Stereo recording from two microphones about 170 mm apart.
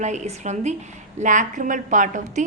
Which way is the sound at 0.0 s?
45° right (ahead or behind).